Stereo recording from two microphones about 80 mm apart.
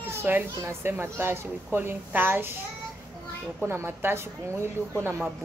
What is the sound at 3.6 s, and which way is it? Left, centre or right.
A woman's voice, right.